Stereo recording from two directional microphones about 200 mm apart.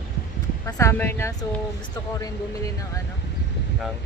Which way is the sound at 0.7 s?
15° left (ahead or behind).